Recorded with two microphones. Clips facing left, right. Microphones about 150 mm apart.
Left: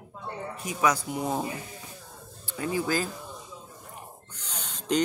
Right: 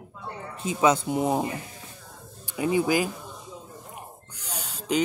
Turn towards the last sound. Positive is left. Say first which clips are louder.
# right 1 dB
turn(degrees=-10)  # may be behind; listen again after turning